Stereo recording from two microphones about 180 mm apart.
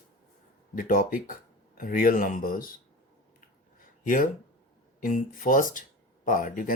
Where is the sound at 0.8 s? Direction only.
50° left (ahead or behind).